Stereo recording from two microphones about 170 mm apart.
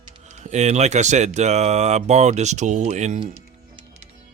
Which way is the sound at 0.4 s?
40° right (ahead or behind).